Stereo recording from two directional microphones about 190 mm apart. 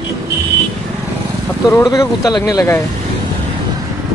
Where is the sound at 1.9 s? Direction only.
20° left (ahead or behind).